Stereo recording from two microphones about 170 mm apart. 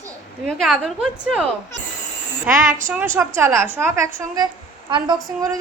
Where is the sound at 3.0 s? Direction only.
15° right (ahead or behind).